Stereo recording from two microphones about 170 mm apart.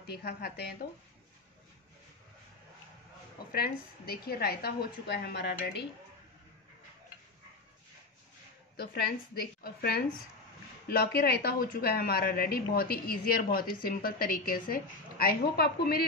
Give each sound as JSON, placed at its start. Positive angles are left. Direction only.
{"t": 0.0, "sound": "a woman's voice", "side_deg": 70}
{"t": 3.5, "sound": "a woman's voice", "side_deg": 65}
{"t": 8.7, "sound": "a woman's voice", "side_deg": 65}